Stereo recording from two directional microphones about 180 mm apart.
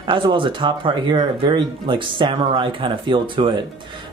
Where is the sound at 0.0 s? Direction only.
25° right (ahead or behind).